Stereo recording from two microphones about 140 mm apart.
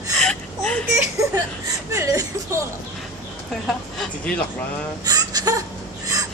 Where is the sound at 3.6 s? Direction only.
5° left (ahead or behind).